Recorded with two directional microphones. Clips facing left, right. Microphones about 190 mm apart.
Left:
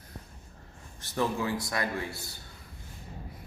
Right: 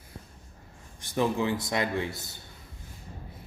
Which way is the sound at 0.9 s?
15° right (ahead or behind).